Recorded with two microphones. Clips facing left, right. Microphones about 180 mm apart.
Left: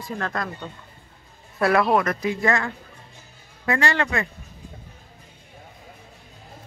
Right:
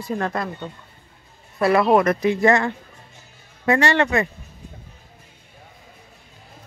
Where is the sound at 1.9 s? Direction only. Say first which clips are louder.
Right 5 dB; 20° right (ahead or behind).